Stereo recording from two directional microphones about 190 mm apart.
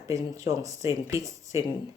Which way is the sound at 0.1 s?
15° right (ahead or behind).